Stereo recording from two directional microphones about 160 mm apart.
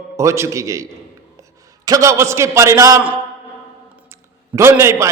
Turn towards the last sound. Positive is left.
turn(degrees=-15)  # may be behind; listen again after turning